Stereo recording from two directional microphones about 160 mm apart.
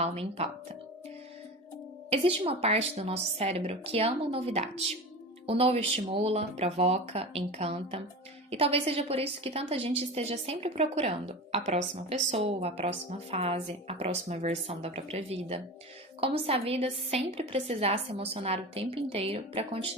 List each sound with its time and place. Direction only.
0.0 s a woman's voice: 40° right (ahead or behind)
2.0 s a woman's voice: 35° right (ahead or behind)